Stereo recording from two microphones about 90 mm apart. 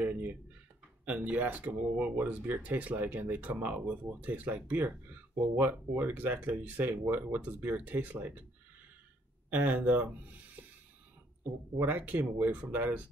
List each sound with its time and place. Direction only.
0.0 s speech: 20° right (ahead or behind)
9.5 s speech: 20° right (ahead or behind)
11.8 s speech: 20° right (ahead or behind)